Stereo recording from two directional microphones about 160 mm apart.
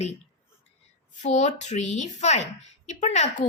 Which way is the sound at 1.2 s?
45° left (ahead or behind).